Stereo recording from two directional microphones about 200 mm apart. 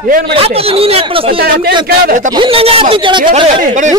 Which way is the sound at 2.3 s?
30° right (ahead or behind).